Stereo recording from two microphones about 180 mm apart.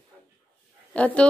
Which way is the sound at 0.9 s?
5° left (ahead or behind).